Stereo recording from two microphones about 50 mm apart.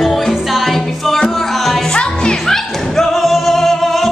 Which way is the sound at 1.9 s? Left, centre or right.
Centre.